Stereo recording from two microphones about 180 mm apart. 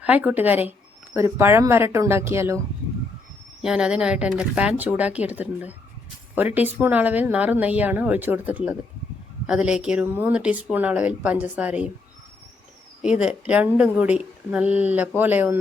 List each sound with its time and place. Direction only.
0.0 s speech: 10° right (ahead or behind)
3.6 s speech: 5° right (ahead or behind)
13.0 s speech: 5° right (ahead or behind)